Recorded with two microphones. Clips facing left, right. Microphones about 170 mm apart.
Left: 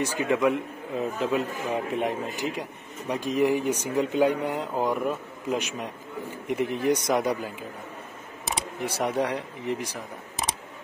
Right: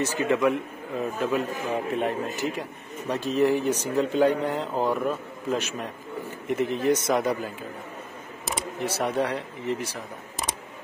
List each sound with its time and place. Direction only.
0.0 s a man's voice: 15° left (ahead or behind)
8.8 s a man's voice: 15° left (ahead or behind)